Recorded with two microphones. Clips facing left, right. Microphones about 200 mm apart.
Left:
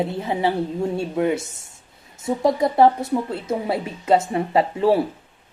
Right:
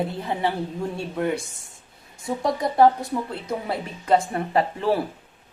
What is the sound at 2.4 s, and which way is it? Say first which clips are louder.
Speech: left 2 dB; 25° left (ahead or behind).